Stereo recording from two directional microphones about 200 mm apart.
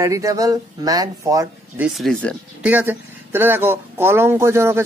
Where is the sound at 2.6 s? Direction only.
10° right (ahead or behind).